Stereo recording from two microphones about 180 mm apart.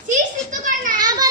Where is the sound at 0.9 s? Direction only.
20° right (ahead or behind).